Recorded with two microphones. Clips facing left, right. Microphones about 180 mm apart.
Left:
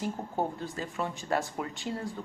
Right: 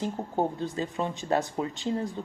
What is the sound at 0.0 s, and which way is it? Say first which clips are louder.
Speech: right 3 dB; 20° right (ahead or behind).